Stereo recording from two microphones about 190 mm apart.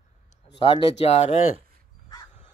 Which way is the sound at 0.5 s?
25° left (ahead or behind).